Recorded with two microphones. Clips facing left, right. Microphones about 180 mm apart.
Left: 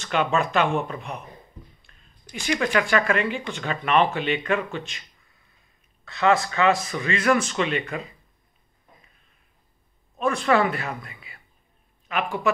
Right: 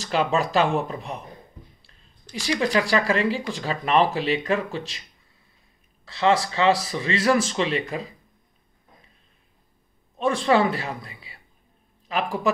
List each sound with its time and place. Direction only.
0.0 s speech: 35° right (ahead or behind)
2.6 s speech: 35° right (ahead or behind)
6.0 s speech: 30° right (ahead or behind)
10.1 s speech: 30° right (ahead or behind)